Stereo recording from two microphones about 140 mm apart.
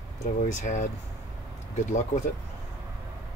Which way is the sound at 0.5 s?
60° left (ahead or behind).